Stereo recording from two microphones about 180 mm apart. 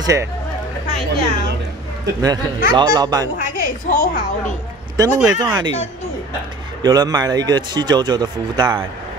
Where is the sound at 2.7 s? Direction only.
20° right (ahead or behind).